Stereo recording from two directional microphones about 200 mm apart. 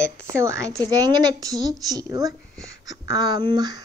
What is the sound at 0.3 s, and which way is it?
A woman's voice, 15° right (ahead or behind).